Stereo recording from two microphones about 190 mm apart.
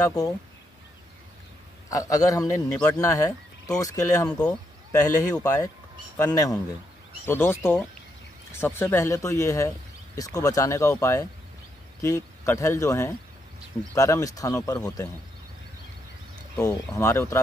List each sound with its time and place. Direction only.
0.0 s speech: 20° left (ahead or behind)
1.9 s a man's voice: 15° left (ahead or behind)
4.3 s speech: 5° left (ahead or behind)
5.0 s a man's voice: 20° left (ahead or behind)
16.5 s a man's voice: 15° left (ahead or behind)